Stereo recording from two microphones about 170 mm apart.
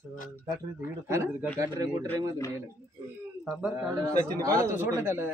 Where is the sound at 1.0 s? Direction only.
15° right (ahead or behind).